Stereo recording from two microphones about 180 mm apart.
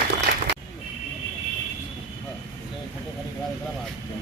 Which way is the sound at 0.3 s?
60° right (ahead or behind).